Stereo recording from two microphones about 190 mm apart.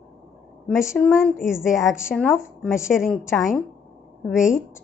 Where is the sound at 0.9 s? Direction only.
Centre (ahead or behind).